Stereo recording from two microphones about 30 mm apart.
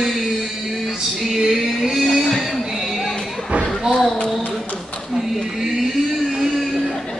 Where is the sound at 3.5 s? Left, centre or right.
Right.